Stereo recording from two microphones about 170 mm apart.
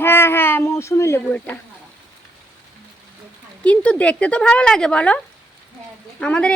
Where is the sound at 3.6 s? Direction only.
10° left (ahead or behind).